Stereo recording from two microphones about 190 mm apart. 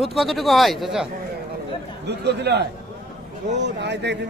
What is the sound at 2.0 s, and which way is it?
Speech, 60° right (ahead or behind).